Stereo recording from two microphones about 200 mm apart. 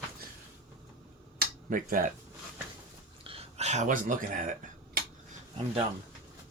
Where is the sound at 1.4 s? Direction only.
45° right (ahead or behind).